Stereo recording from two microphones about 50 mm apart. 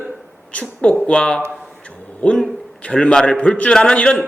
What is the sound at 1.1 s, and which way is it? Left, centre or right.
Speech, centre.